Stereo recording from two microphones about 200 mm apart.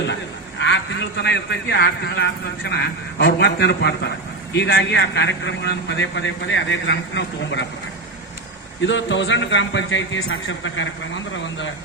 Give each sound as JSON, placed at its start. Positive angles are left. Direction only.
{"t": 0.6, "sound": "a man's voice", "side_deg": 60}
{"t": 8.9, "sound": "a man's voice", "side_deg": 65}